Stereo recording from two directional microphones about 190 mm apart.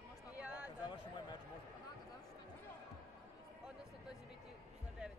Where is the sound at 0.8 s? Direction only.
20° left (ahead or behind).